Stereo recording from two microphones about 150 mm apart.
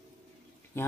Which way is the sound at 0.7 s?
15° left (ahead or behind).